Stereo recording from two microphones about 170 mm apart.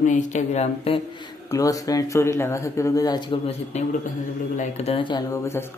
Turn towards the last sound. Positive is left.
turn(degrees=15)  # may be behind; listen again after turning